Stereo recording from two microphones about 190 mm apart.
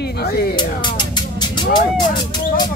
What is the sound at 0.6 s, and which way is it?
Vehicle, 25° left (ahead or behind).